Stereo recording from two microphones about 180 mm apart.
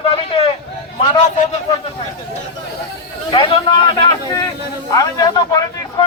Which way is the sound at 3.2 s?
25° left (ahead or behind).